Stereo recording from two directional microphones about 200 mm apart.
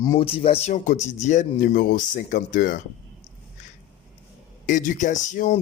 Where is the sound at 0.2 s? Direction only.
30° left (ahead or behind).